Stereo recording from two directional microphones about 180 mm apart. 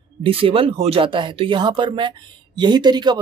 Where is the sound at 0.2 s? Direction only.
30° right (ahead or behind).